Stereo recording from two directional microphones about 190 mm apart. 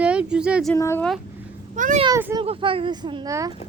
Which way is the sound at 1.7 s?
40° right (ahead or behind).